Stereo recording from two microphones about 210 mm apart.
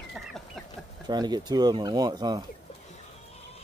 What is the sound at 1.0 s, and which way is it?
Speech, 20° right (ahead or behind).